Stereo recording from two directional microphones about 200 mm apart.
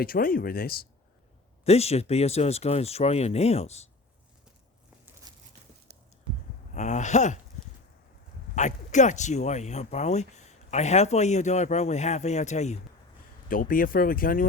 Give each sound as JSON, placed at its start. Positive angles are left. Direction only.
{"t": 0.0, "sound": "speech", "side_deg": 45}
{"t": 1.6, "sound": "speech", "side_deg": 30}
{"t": 5.3, "sound": "a sound", "side_deg": -20}
{"t": 5.9, "sound": "a sound", "side_deg": -55}
{"t": 6.7, "sound": "speech", "side_deg": 35}
{"t": 8.5, "sound": "speech", "side_deg": 35}